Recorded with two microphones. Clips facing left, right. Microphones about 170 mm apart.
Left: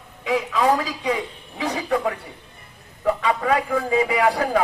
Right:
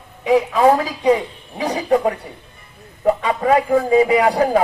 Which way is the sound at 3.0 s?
30° right (ahead or behind).